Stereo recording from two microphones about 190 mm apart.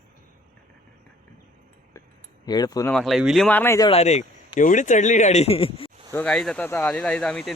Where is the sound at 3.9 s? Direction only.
35° left (ahead or behind).